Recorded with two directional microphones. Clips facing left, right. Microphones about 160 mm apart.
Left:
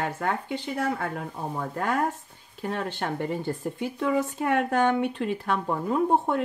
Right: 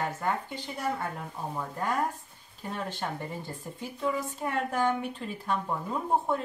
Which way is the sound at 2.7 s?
70° left (ahead or behind).